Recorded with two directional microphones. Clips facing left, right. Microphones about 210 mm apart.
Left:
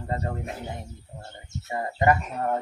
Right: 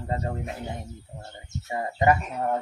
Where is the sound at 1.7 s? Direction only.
15° right (ahead or behind).